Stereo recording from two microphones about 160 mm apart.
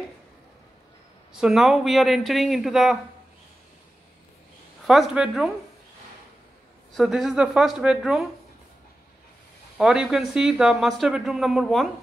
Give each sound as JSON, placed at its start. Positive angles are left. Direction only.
{"t": 1.3, "sound": "speech", "side_deg": -5}
{"t": 4.8, "sound": "speech", "side_deg": 0}
{"t": 6.9, "sound": "speech", "side_deg": 0}
{"t": 9.8, "sound": "speech", "side_deg": -5}